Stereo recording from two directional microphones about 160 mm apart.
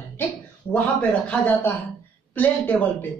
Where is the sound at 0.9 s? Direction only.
10° left (ahead or behind).